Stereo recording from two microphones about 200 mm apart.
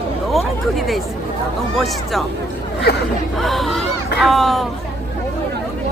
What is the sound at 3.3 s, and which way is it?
Speech, centre (ahead or behind).